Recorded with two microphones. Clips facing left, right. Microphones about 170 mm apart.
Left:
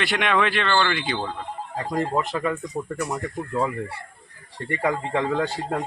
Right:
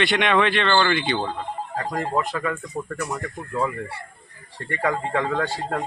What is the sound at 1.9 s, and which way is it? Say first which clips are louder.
Speech: left 2 dB; 20° left (ahead or behind).